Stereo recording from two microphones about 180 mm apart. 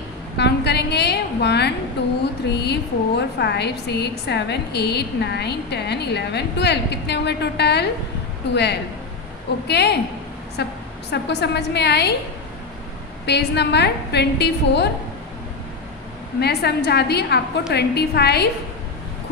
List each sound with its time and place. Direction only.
0.4 s a sound: 65° left (ahead or behind)
2.5 s a woman's voice: 70° left (ahead or behind)
9.7 s a woman's voice: 65° left (ahead or behind)
13.2 s a woman's voice: 70° left (ahead or behind)
16.3 s a woman's voice: 65° left (ahead or behind)